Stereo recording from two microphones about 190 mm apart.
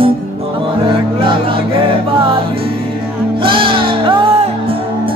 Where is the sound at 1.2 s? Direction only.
25° right (ahead or behind).